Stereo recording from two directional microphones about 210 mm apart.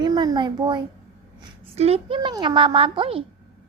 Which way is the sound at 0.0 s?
20° right (ahead or behind).